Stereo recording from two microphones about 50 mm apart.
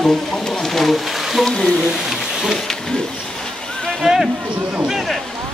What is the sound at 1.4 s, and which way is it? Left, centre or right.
Speech, centre.